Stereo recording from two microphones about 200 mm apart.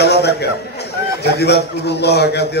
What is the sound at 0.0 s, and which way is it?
A man's voice, 55° left (ahead or behind).